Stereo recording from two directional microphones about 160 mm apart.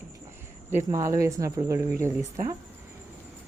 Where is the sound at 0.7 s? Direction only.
20° right (ahead or behind).